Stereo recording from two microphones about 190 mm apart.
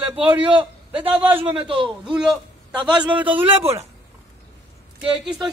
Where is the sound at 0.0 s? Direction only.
5° right (ahead or behind).